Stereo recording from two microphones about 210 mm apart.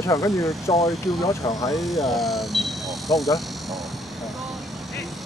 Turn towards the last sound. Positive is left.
turn(degrees=0)  # may be behind; listen again after turning